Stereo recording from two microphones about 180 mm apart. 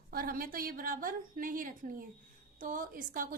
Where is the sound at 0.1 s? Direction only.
55° right (ahead or behind).